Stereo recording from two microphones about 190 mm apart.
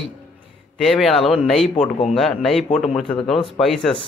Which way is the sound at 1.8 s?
35° left (ahead or behind).